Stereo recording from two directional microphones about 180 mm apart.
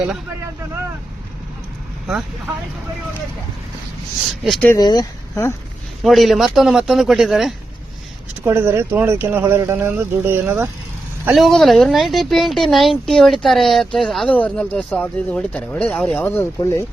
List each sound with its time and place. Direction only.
4.4 s a woman's voice: centre (ahead or behind)
4.7 s speech: 20° left (ahead or behind)
6.0 s a woman's voice: centre (ahead or behind)
8.4 s speech: 15° right (ahead or behind)
11.3 s a woman's voice: centre (ahead or behind); by 16.8 s 15° left (ahead or behind)